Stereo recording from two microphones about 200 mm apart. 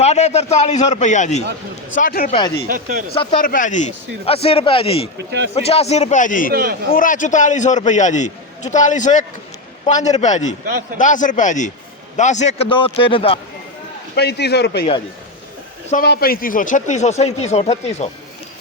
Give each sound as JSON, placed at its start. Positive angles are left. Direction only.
{"t": 0.0, "sound": "a man's voice", "side_deg": 35}
{"t": 2.6, "sound": "speech", "side_deg": -45}
{"t": 3.4, "sound": "a man's voice", "side_deg": 40}
{"t": 5.1, "sound": "speech", "side_deg": -60}
{"t": 5.5, "sound": "a man's voice", "side_deg": 30}
{"t": 6.5, "sound": "speech", "side_deg": -50}
{"t": 6.9, "sound": "a man's voice", "side_deg": 40}
{"t": 14.2, "sound": "speech", "side_deg": 55}
{"t": 16.0, "sound": "a man's voice", "side_deg": 45}